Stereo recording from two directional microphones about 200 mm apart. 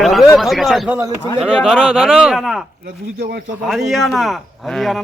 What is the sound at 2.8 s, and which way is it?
Speech, 50° right (ahead or behind).